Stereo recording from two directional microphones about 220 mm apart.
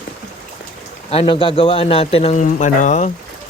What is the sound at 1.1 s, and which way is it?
A man's voice, 25° left (ahead or behind).